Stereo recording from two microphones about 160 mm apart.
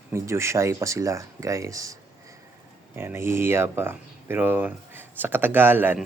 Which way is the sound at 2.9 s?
15° right (ahead or behind).